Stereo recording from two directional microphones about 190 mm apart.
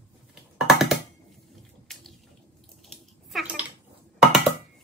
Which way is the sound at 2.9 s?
5° right (ahead or behind).